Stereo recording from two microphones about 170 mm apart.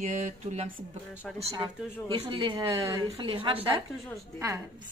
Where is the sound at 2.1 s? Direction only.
30° right (ahead or behind).